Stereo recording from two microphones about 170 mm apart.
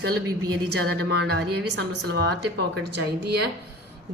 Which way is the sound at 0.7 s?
75° right (ahead or behind).